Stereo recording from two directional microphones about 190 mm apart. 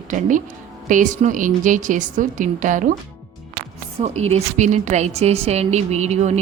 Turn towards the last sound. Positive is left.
turn(degrees=-35)  # may be behind; listen again after turning